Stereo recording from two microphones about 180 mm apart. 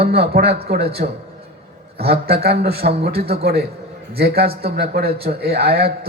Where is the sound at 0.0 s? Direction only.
60° right (ahead or behind).